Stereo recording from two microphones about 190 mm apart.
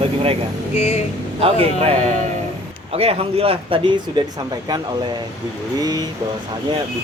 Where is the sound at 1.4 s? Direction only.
30° right (ahead or behind).